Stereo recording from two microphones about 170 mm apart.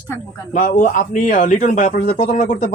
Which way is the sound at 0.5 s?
50° left (ahead or behind).